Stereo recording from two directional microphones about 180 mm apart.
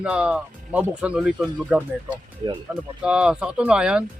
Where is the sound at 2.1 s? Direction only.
25° right (ahead or behind).